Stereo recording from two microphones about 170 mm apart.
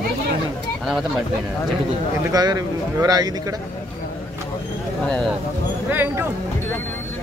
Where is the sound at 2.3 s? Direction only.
20° right (ahead or behind).